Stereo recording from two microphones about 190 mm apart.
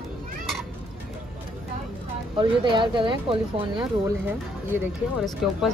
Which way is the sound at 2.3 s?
25° right (ahead or behind).